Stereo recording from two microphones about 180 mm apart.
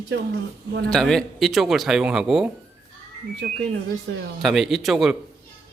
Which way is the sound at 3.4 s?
65° right (ahead or behind).